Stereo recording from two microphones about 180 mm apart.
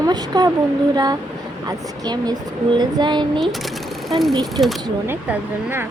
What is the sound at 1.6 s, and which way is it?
Speech, 20° right (ahead or behind).